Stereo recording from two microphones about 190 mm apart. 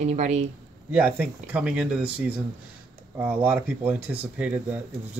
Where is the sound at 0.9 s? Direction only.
10° right (ahead or behind).